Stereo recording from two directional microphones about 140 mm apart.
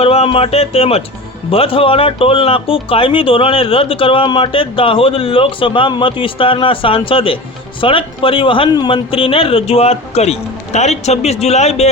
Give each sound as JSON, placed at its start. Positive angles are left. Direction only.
{"t": 0.0, "sound": "speech", "side_deg": 45}